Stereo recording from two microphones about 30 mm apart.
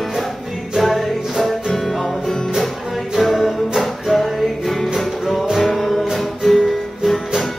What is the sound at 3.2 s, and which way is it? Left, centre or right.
Music, centre.